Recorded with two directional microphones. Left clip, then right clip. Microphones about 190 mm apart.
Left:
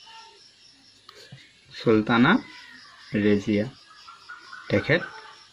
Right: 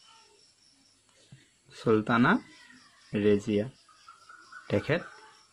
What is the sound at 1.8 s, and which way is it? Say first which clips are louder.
Speech: left 4 dB; 35° right (ahead or behind).